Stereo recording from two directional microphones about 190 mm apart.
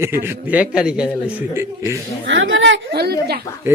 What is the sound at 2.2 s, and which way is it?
Speech, 85° right.